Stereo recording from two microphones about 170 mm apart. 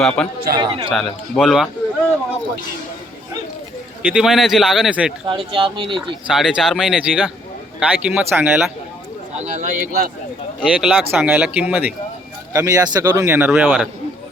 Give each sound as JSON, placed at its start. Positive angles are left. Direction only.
{"t": 0.0, "sound": "a man's voice", "side_deg": 5}
{"t": 0.5, "sound": "speech", "side_deg": -30}
{"t": 0.9, "sound": "a man's voice", "side_deg": 0}
{"t": 4.0, "sound": "a man's voice", "side_deg": -5}
{"t": 5.2, "sound": "speech", "side_deg": -30}
{"t": 6.2, "sound": "a man's voice", "side_deg": -5}
{"t": 9.4, "sound": "speech", "side_deg": -50}
{"t": 10.6, "sound": "speech", "side_deg": -5}
{"t": 12.5, "sound": "speech", "side_deg": -20}